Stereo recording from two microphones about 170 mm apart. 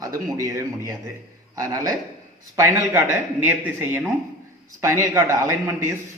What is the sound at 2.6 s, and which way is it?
Speech, 15° right (ahead or behind).